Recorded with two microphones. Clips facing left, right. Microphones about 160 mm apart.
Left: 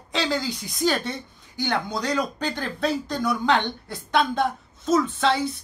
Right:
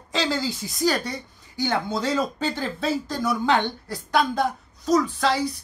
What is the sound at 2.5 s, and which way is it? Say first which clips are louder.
Speech: even; 5° right (ahead or behind).